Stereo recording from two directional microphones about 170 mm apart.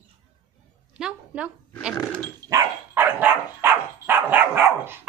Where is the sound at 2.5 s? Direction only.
10° right (ahead or behind).